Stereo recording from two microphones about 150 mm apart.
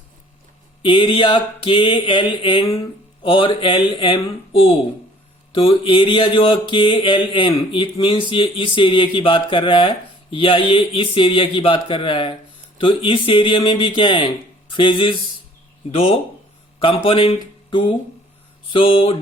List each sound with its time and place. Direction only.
0.8 s speech: 35° left (ahead or behind)